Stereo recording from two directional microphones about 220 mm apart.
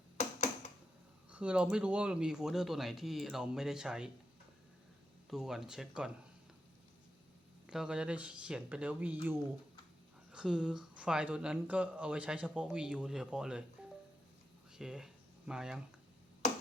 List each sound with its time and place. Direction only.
0.2 s a sound: 30° left (ahead or behind)
1.3 s speech: 5° right (ahead or behind)
5.3 s speech: centre (ahead or behind)
7.7 s speech: 5° right (ahead or behind)
10.3 s speech: 5° right (ahead or behind)
14.8 s speech: 5° right (ahead or behind)